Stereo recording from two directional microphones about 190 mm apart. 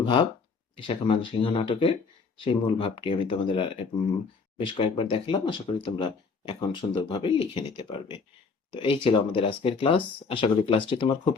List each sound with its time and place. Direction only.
0.0 s speech: 30° left (ahead or behind)